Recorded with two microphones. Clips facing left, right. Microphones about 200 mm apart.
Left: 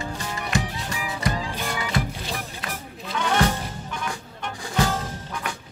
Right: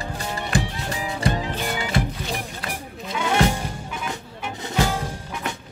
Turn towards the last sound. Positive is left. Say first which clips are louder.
# right 1 dB
turn(degrees=-10)  # may be behind; listen again after turning